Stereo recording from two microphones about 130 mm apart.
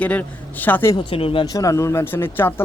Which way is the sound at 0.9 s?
45° left (ahead or behind).